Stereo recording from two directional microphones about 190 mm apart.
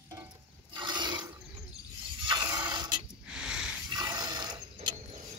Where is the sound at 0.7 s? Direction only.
25° right (ahead or behind).